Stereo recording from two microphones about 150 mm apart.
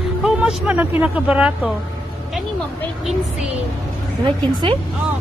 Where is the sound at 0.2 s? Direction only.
5° right (ahead or behind).